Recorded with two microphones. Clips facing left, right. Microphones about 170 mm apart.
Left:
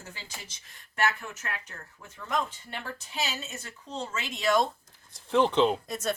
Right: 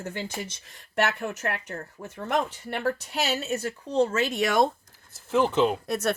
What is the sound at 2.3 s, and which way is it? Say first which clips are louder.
A woman's voice: right 4 dB; 65° right (ahead or behind).